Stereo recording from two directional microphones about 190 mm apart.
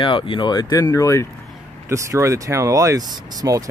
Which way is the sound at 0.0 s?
25° left (ahead or behind).